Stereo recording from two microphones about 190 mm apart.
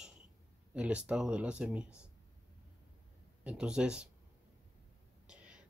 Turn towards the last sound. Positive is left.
turn(degrees=-5)  # may be behind; listen again after turning